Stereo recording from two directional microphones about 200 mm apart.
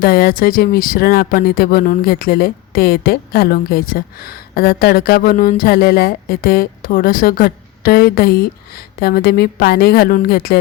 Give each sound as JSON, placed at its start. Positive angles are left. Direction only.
{"t": 0.0, "sound": "speech", "side_deg": 50}